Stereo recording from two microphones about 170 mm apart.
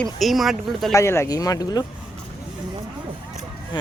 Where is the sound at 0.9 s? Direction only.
15° left (ahead or behind).